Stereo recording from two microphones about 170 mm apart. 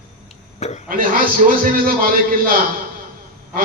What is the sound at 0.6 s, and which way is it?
Speech, 40° left (ahead or behind).